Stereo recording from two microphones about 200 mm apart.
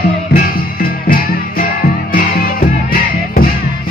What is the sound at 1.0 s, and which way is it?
Music, 45° left (ahead or behind).